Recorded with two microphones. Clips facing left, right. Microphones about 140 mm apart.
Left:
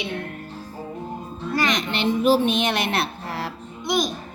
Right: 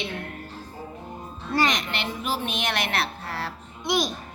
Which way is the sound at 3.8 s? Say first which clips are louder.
Left 2 dB; centre (ahead or behind).